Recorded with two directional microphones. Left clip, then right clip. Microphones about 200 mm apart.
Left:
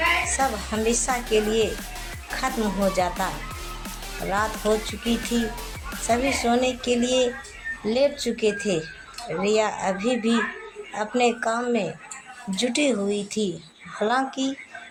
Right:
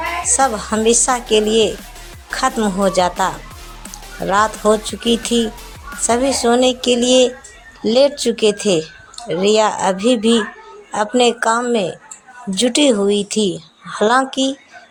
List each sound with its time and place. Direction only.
0.3 s a woman's voice: 45° right (ahead or behind)